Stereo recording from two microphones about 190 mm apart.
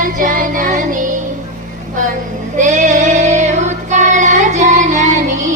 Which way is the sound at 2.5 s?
40° right (ahead or behind).